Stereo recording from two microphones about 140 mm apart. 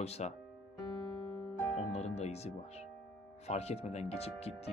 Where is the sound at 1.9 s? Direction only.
50° left (ahead or behind).